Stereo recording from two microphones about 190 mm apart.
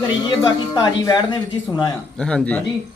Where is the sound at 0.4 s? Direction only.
20° left (ahead or behind).